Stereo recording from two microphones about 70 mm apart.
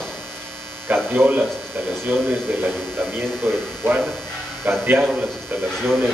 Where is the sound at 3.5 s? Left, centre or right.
Right.